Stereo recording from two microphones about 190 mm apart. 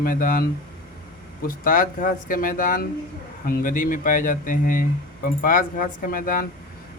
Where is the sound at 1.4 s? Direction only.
45° left (ahead or behind).